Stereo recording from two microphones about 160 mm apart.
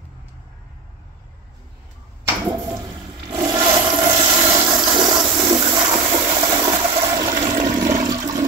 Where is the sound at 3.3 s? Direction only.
25° right (ahead or behind).